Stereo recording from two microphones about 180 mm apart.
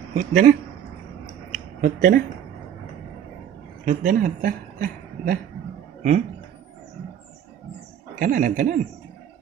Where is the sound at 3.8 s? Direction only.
45° right (ahead or behind).